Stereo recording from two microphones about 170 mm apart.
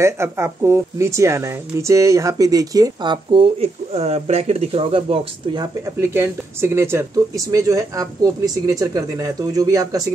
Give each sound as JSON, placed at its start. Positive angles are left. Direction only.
{"t": 0.0, "sound": "speech", "side_deg": -15}
{"t": 5.9, "sound": "speech", "side_deg": -15}